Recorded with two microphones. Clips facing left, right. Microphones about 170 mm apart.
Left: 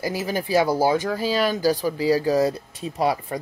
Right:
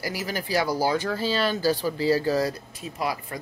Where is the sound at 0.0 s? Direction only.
20° left (ahead or behind).